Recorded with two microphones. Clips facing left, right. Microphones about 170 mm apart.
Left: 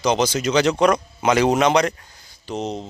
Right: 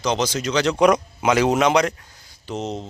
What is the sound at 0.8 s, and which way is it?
Speech, 15° right (ahead or behind).